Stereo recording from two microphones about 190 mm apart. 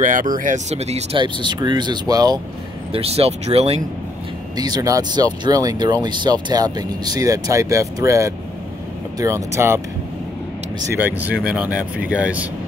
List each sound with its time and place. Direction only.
0.0 s speech: 45° right (ahead or behind); by 2.4 s 20° right (ahead or behind)
2.9 s speech: 30° right (ahead or behind)
4.6 s speech: 20° right (ahead or behind)
10.9 s speech: 10° right (ahead or behind)